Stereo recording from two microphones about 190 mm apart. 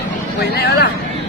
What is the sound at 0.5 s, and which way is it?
Speech, 55° left (ahead or behind).